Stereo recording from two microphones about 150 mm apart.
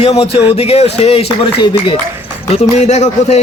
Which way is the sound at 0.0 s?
40° left (ahead or behind).